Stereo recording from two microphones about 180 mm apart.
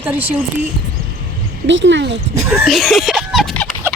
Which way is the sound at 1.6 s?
85° right.